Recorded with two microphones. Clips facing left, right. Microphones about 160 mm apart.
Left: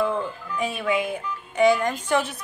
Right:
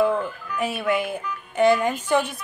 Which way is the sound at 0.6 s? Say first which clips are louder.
Right 1 dB; 5° right (ahead or behind).